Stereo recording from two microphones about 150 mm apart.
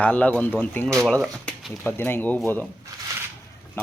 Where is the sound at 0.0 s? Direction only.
10° left (ahead or behind).